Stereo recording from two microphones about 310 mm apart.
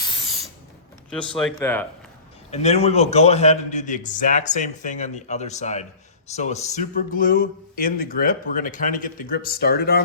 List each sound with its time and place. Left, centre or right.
1.4 s speech: centre
2.5 s speech: left